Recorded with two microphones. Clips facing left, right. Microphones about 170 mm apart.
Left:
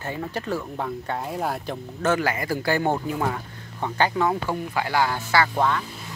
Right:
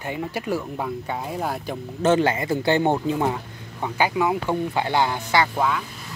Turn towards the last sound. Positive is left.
turn(degrees=-5)  # may be behind; listen again after turning